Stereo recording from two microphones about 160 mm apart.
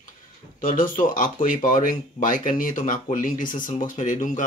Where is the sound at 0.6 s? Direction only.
60° left (ahead or behind).